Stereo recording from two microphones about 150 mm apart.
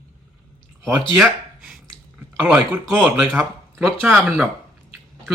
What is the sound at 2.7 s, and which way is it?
Speech, 15° right (ahead or behind).